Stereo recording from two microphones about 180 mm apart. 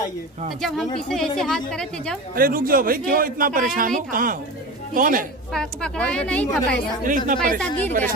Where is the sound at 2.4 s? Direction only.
50° right (ahead or behind).